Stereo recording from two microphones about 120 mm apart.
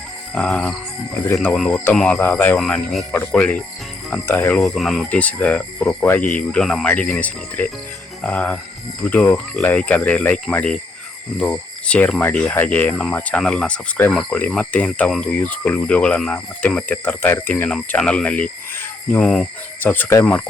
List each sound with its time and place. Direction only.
0.3 s speech: 5° left (ahead or behind)
1.2 s speech: 15° left (ahead or behind)
1.5 s speech: 5° left (ahead or behind)
2.6 s speech: 5° left (ahead or behind)
4.5 s speech: centre (ahead or behind)
19.9 s speech: 20° left (ahead or behind)